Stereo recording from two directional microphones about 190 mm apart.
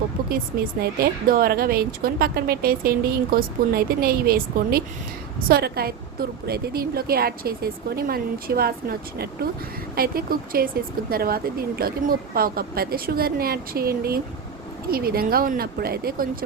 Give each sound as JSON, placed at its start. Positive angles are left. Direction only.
{"t": 0.8, "sound": "speech", "side_deg": -55}